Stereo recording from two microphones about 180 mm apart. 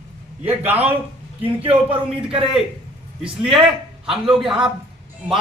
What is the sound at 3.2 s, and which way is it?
A man's voice, 5° right (ahead or behind).